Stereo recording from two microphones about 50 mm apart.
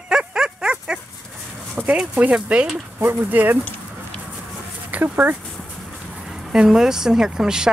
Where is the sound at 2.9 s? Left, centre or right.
Right.